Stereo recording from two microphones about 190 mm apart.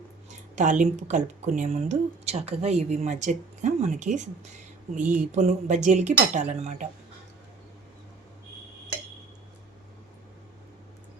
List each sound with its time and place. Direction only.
0.5 s a woman's voice: 40° right (ahead or behind)